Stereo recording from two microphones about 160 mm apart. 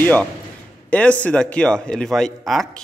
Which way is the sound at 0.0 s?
10° left (ahead or behind).